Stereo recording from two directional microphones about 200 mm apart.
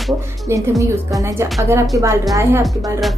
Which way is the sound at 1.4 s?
15° right (ahead or behind).